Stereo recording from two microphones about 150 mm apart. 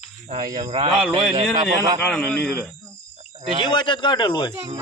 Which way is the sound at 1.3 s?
30° right (ahead or behind).